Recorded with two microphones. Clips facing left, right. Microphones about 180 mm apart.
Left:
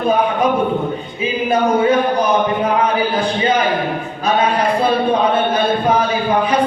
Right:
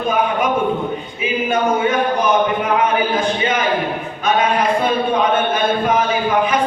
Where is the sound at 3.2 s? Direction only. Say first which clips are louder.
Left 2 dB; 35° left (ahead or behind).